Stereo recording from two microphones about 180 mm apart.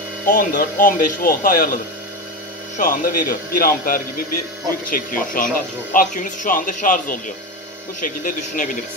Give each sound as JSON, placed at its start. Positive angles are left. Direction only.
{"t": 0.3, "sound": "speech", "side_deg": 50}
{"t": 2.8, "sound": "speech", "side_deg": 50}